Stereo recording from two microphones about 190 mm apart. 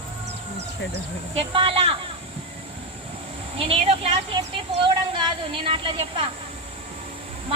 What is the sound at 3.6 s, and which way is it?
A woman's voice, 30° right (ahead or behind).